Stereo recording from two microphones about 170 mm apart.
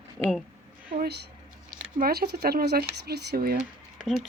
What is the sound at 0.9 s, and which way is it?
Speech, 70° right (ahead or behind).